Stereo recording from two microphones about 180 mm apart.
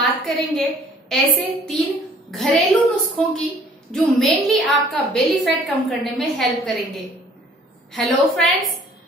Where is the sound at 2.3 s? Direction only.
Centre (ahead or behind).